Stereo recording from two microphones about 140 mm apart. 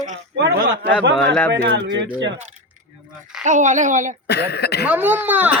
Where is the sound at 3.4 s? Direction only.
65° right (ahead or behind).